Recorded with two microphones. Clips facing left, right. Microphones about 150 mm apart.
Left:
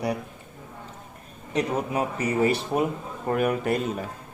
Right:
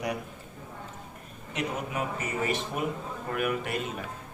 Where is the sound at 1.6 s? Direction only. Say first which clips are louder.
Left 6 dB; 35° left (ahead or behind).